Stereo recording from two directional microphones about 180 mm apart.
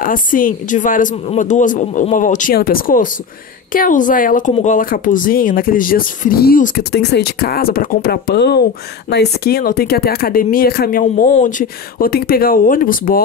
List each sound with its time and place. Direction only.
0.0 s speech: 50° left (ahead or behind)